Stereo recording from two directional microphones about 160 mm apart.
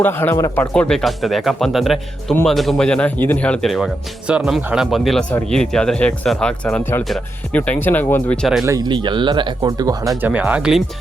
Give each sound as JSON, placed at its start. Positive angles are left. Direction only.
{"t": 0.0, "sound": "speech", "side_deg": 15}
{"t": 8.6, "sound": "speech", "side_deg": -25}
{"t": 10.2, "sound": "speech", "side_deg": -10}